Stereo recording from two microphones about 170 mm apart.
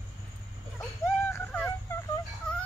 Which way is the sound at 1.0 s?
15° left (ahead or behind).